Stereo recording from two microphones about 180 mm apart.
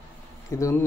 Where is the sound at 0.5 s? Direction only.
15° left (ahead or behind).